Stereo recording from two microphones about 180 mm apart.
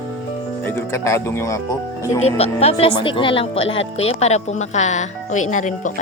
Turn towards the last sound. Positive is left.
turn(degrees=45)  # may be behind; listen again after turning